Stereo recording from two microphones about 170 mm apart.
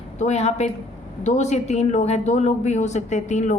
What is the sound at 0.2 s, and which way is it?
A woman's voice, 40° left (ahead or behind).